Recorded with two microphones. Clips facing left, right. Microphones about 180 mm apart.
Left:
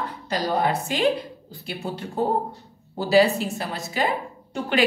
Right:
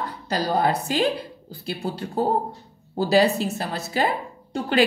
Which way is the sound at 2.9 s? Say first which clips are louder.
Even; 40° right (ahead or behind).